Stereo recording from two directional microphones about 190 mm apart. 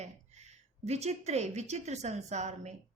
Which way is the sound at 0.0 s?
35° right (ahead or behind).